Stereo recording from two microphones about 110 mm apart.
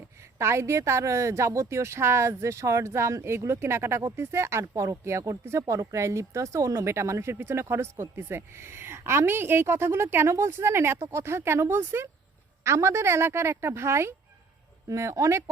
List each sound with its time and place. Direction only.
0.3 s a woman's voice: 25° right (ahead or behind)